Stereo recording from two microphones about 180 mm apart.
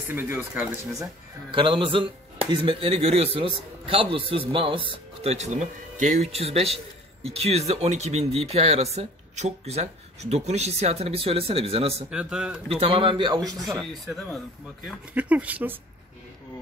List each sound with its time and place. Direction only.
0.1 s speech: 10° right (ahead or behind)
1.5 s speech: 30° right (ahead or behind)
12.1 s speech: 5° right (ahead or behind)
12.6 s speech: 35° right (ahead or behind)
14.9 s speech: 10° right (ahead or behind)